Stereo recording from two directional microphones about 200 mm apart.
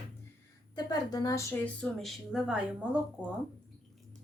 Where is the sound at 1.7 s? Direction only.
Centre (ahead or behind).